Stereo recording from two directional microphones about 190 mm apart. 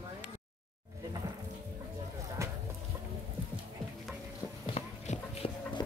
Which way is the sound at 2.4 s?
15° right (ahead or behind).